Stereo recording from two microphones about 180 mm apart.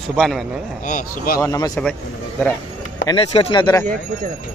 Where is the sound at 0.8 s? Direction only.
50° left (ahead or behind).